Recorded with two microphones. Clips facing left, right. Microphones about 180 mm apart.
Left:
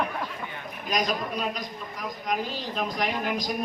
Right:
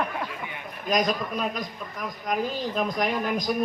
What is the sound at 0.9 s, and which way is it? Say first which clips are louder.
A woman's voice: right 3 dB; 50° right (ahead or behind).